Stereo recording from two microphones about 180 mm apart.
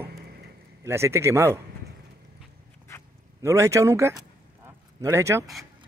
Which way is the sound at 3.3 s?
15° right (ahead or behind).